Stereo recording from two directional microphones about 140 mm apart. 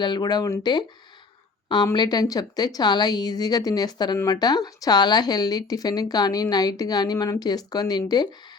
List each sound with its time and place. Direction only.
0.0 s speech: 30° left (ahead or behind)